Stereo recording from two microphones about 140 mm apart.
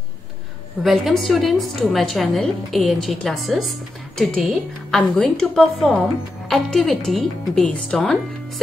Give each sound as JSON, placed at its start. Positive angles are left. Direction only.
{"t": 0.8, "sound": "a woman's voice", "side_deg": 0}